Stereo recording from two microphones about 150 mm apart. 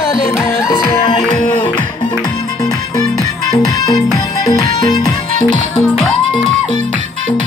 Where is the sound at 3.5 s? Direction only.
25° left (ahead or behind).